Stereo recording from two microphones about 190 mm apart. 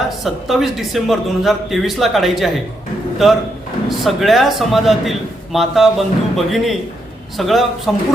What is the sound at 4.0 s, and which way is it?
A man's voice, centre (ahead or behind).